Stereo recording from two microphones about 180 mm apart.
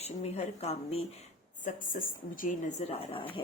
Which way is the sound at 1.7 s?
50° left (ahead or behind).